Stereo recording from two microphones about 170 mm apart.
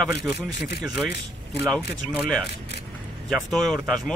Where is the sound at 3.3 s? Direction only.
Centre (ahead or behind).